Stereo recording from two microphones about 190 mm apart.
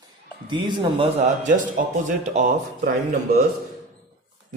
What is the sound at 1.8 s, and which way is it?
Speech, 45° right (ahead or behind).